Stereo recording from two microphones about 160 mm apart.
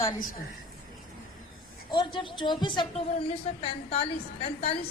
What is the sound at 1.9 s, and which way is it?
A woman's voice, 30° left (ahead or behind).